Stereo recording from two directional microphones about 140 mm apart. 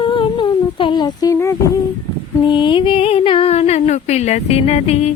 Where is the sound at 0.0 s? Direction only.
35° left (ahead or behind).